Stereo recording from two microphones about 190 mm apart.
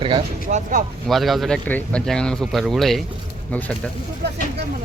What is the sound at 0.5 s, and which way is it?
Speech, 45° right (ahead or behind).